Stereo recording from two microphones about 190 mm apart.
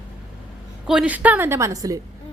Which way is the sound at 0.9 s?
5° right (ahead or behind).